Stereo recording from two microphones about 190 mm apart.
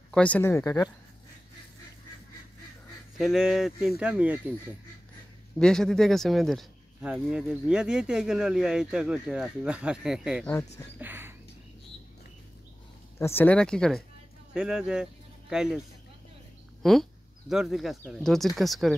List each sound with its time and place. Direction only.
0.1 s speech: 5° left (ahead or behind)
3.2 s speech: centre (ahead or behind)
5.6 s speech: 5° left (ahead or behind)
11.0 s a sound: 10° right (ahead or behind)
13.2 s speech: 10° left (ahead or behind)
16.8 s speech: centre (ahead or behind)